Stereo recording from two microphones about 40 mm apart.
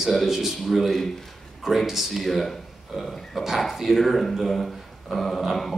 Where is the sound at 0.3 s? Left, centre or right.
Centre.